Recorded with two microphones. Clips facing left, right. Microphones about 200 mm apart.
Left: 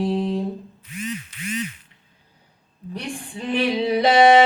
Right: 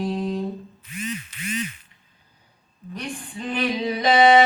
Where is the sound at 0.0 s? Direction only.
25° left (ahead or behind).